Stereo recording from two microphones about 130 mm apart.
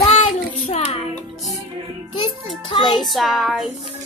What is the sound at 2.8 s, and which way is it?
Child singing, centre (ahead or behind).